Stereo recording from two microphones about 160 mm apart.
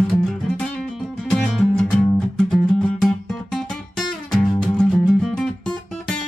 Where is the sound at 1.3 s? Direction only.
5° left (ahead or behind).